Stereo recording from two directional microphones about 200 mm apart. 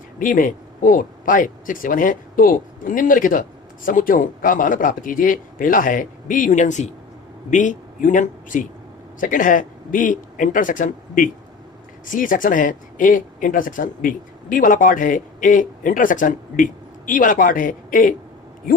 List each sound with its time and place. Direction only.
0.2 s speech: 40° left (ahead or behind)